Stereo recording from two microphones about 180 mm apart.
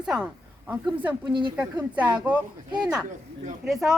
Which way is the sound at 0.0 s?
Centre (ahead or behind).